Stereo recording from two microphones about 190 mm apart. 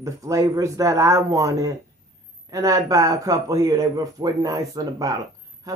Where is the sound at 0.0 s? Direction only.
15° right (ahead or behind).